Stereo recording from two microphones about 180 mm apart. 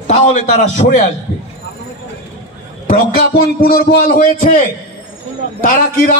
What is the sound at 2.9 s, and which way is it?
A man's voice, 55° left (ahead or behind).